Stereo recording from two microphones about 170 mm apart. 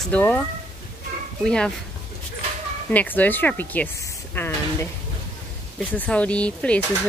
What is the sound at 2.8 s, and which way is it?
Speech, 10° left (ahead or behind).